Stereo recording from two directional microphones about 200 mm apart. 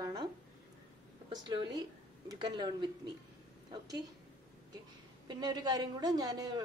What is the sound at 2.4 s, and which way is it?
Speech, 20° right (ahead or behind).